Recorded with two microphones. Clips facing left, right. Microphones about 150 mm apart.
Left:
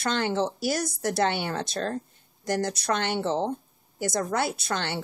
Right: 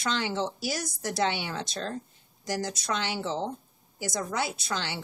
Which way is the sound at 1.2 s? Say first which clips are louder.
Left 2 dB; 55° left (ahead or behind).